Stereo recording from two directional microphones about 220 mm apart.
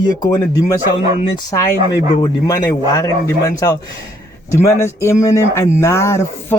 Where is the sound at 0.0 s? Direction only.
15° left (ahead or behind).